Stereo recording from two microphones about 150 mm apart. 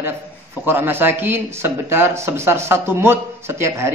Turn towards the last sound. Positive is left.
turn(degrees=-20)  # may be behind; listen again after turning